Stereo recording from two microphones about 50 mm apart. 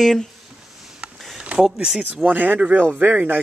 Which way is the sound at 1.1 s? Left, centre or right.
Centre.